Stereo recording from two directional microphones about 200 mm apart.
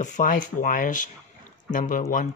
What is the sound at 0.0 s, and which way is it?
Speech, 40° left (ahead or behind).